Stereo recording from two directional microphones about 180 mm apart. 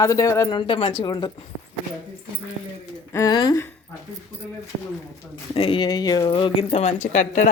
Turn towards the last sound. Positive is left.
turn(degrees=45)  # may be behind; listen again after turning